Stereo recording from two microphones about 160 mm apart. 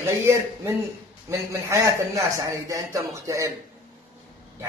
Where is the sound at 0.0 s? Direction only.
15° right (ahead or behind).